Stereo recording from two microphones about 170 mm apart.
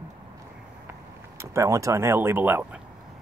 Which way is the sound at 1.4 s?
15° right (ahead or behind).